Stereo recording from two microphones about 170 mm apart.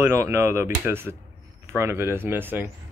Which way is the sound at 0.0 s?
15° right (ahead or behind).